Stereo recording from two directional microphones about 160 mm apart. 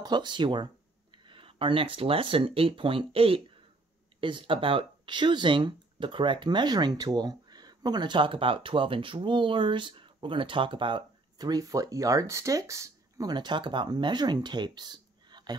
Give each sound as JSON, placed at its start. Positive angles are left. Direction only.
{"t": 0.0, "sound": "speech", "side_deg": -30}